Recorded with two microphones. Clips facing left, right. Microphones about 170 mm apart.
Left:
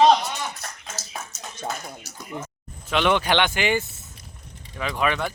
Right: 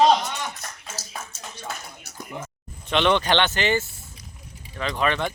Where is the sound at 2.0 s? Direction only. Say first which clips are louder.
Left 2 dB; 60° right (ahead or behind).